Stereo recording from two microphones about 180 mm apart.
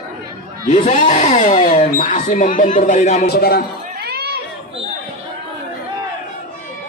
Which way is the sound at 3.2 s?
60° left (ahead or behind).